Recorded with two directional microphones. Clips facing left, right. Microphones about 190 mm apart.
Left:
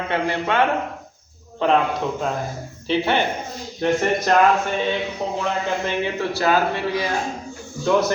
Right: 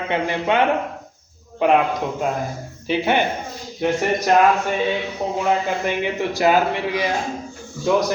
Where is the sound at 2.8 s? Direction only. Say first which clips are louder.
Right 1 dB; 10° right (ahead or behind).